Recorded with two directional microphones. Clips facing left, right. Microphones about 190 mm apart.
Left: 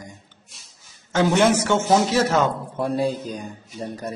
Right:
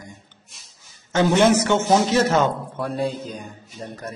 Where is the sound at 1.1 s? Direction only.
5° left (ahead or behind).